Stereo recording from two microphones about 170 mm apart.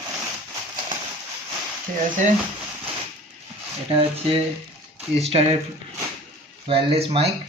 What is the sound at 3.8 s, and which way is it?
Speech, 35° right (ahead or behind).